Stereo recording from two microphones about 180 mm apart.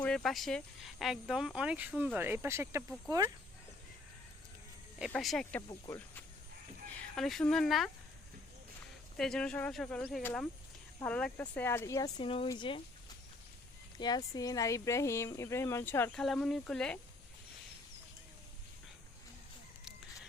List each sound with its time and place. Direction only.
0.0 s speech: 5° left (ahead or behind); by 3.3 s 15° right (ahead or behind)
4.9 s speech: centre (ahead or behind)
5.6 s speech: 25° left (ahead or behind)
7.2 s speech: centre (ahead or behind)
9.1 s speech: 5° left (ahead or behind); by 12.1 s 20° left (ahead or behind)
12.1 s speech: 30° left (ahead or behind)
14.0 s speech: 20° left (ahead or behind); by 17.0 s 5° left (ahead or behind)